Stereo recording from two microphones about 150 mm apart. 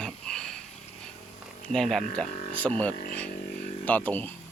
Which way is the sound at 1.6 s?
5° left (ahead or behind).